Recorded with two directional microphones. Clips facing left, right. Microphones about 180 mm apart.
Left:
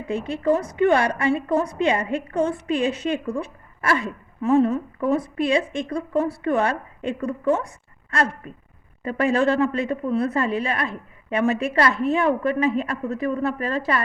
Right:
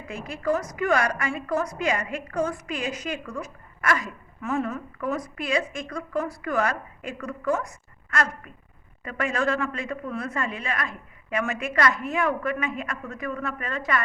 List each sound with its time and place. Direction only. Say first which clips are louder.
0.1 s a woman's voice: left 5 dB; 30° left (ahead or behind)